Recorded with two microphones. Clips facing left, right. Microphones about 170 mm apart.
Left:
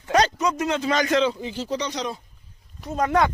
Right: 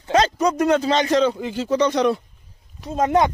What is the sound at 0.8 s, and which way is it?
Speech, 30° right (ahead or behind).